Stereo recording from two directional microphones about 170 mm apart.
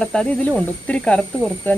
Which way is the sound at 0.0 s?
5° left (ahead or behind).